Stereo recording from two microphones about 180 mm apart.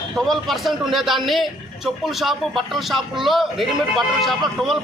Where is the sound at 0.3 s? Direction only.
Centre (ahead or behind).